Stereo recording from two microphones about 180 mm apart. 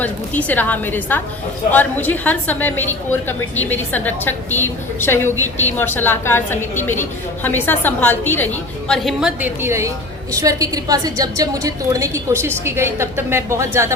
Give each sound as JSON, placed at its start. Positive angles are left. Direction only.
{"t": 0.0, "sound": "a woman's voice", "side_deg": 10}
{"t": 8.9, "sound": "a woman's voice", "side_deg": 0}